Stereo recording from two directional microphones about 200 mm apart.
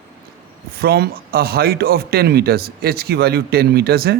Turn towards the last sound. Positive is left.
turn(degrees=-50)  # may be behind; listen again after turning